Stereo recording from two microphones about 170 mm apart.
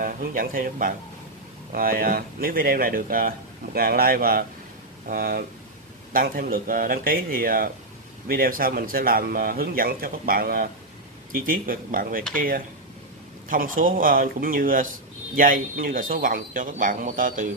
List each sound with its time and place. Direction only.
0.0 s speech: 55° right (ahead or behind)